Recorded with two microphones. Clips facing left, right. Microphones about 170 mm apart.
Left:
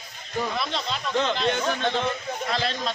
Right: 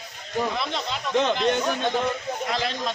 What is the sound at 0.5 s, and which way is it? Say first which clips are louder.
Speech: even; 20° right (ahead or behind).